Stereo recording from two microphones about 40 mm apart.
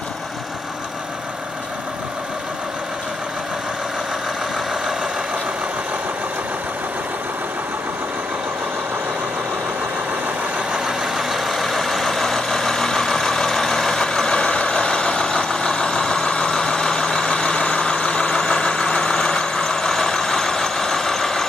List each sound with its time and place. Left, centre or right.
10.7 s vehicle: centre
11.1 s vehicle: centre